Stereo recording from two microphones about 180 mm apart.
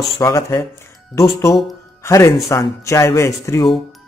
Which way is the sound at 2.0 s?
15° left (ahead or behind).